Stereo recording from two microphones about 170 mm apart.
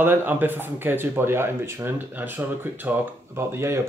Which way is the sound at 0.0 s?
10° right (ahead or behind).